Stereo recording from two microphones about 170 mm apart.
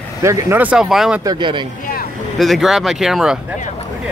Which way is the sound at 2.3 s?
Centre (ahead or behind).